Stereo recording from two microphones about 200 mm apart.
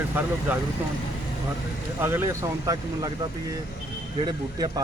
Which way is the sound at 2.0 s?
10° right (ahead or behind).